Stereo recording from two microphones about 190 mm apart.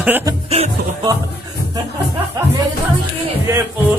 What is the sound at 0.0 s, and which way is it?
Speech, 10° right (ahead or behind).